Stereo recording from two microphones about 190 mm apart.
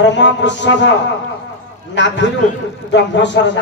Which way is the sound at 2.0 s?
70° left (ahead or behind).